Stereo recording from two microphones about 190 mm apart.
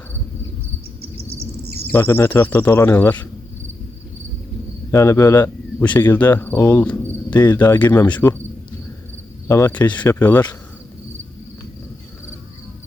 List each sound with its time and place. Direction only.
1.6 s insect: 55° right (ahead or behind)
1.9 s speech: 10° left (ahead or behind)
4.9 s speech: 15° left (ahead or behind)
9.5 s speech: 15° left (ahead or behind)